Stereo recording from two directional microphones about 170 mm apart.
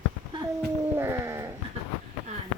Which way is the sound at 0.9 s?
15° right (ahead or behind).